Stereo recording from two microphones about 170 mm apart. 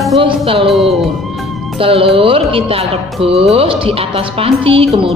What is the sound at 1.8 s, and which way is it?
Speech, 35° right (ahead or behind).